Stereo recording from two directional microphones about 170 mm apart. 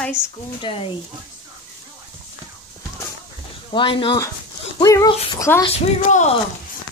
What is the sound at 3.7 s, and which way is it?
Speech, 30° left (ahead or behind).